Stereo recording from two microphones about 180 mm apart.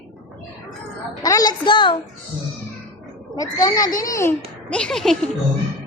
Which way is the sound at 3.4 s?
20° left (ahead or behind).